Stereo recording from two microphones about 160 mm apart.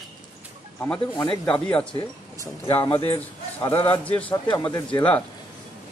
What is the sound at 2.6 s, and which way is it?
Speech, 30° left (ahead or behind).